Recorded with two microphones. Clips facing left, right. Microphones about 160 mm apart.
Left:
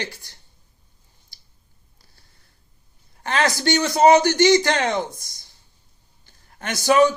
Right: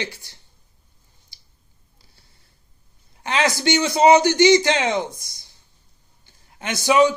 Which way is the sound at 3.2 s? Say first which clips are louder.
Even; 20° right (ahead or behind).